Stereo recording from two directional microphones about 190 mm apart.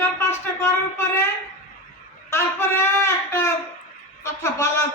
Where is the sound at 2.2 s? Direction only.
15° left (ahead or behind).